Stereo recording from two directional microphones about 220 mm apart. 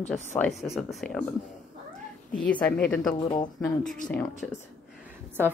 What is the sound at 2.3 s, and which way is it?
Speech, 5° left (ahead or behind).